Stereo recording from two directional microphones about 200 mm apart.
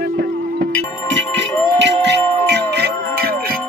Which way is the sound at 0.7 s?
80° right.